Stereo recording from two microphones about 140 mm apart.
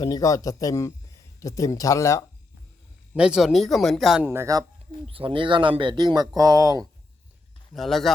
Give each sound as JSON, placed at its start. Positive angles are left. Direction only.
{"t": 0.0, "sound": "speech", "side_deg": 25}
{"t": 3.2, "sound": "speech", "side_deg": -5}
{"t": 4.2, "sound": "speech", "side_deg": -15}
{"t": 5.0, "sound": "speech", "side_deg": -40}
{"t": 7.7, "sound": "speech", "side_deg": 0}